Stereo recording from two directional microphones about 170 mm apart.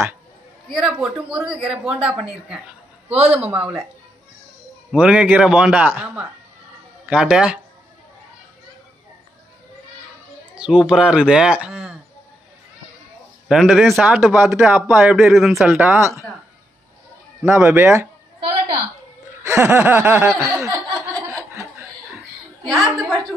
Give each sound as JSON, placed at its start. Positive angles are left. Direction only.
{"t": 0.7, "sound": "speech", "side_deg": -5}
{"t": 4.9, "sound": "a man's voice", "side_deg": -10}
{"t": 10.5, "sound": "speech", "side_deg": -5}
{"t": 13.5, "sound": "speech", "side_deg": 0}
{"t": 17.4, "sound": "a man's voice", "side_deg": -15}
{"t": 19.4, "sound": "a man's voice", "side_deg": -15}
{"t": 21.3, "sound": "laughter", "side_deg": -15}
{"t": 22.7, "sound": "speech", "side_deg": 0}